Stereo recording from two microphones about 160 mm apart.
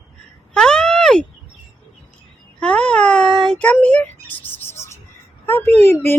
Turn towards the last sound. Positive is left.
turn(degrees=15)  # may be behind; listen again after turning